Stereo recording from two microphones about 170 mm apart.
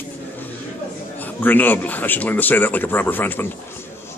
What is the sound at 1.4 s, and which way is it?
A man's voice, 10° left (ahead or behind).